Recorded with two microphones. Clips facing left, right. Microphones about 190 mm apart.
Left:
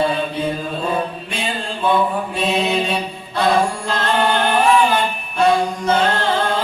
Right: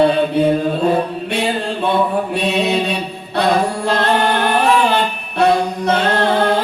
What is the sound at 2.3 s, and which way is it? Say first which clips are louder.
Chant: right 2 dB; 65° right (ahead or behind).